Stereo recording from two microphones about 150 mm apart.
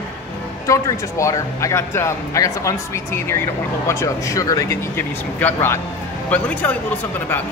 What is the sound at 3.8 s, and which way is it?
Speech, 20° left (ahead or behind).